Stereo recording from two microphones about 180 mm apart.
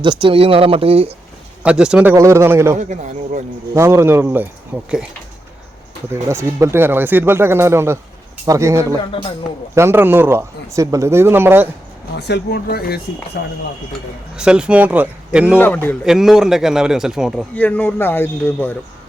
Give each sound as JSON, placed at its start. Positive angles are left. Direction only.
{"t": 0.0, "sound": "speech", "side_deg": -25}
{"t": 1.6, "sound": "speech", "side_deg": -5}
{"t": 2.7, "sound": "speech", "side_deg": -40}
{"t": 3.8, "sound": "speech", "side_deg": -15}
{"t": 6.2, "sound": "speech", "side_deg": -15}
{"t": 12.1, "sound": "speech", "side_deg": 65}
{"t": 14.3, "sound": "a man's voice", "side_deg": -5}
{"t": 15.5, "sound": "a man's voice", "side_deg": 10}
{"t": 16.0, "sound": "a man's voice", "side_deg": 0}
{"t": 17.5, "sound": "a man's voice", "side_deg": 10}